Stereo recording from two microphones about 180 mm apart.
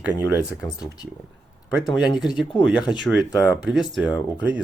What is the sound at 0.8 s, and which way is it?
Speech, 20° left (ahead or behind).